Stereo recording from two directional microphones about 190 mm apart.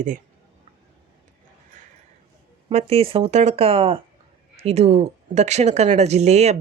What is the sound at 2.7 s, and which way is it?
Speech, 35° right (ahead or behind).